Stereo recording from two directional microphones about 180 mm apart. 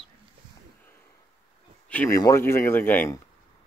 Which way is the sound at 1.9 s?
10° left (ahead or behind).